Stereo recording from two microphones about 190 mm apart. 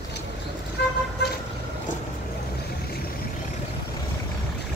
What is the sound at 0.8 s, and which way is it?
Vehicle, 60° left (ahead or behind).